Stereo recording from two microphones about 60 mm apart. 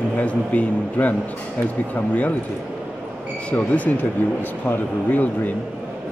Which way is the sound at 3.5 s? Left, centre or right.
Left.